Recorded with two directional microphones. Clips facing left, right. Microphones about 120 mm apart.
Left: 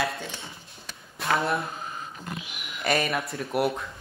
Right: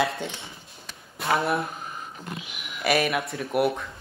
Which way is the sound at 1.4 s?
Centre (ahead or behind).